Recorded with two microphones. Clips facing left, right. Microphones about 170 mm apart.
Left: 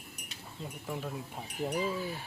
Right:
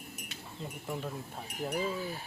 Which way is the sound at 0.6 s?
Centre (ahead or behind).